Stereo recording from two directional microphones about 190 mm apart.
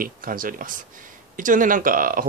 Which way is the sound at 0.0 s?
50° right (ahead or behind).